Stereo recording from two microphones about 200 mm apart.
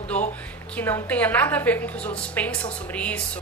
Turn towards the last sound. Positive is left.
turn(degrees=5)  # may be behind; listen again after turning